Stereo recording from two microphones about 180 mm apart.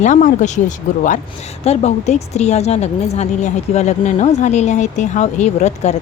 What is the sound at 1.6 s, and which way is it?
A woman's voice, 35° left (ahead or behind).